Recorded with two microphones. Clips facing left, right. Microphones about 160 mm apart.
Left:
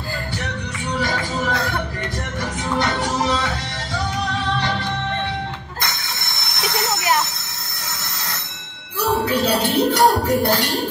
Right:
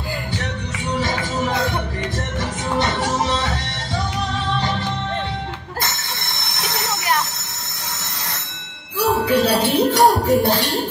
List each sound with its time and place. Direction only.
0.9 s music: 20° right (ahead or behind)
9.0 s music: centre (ahead or behind)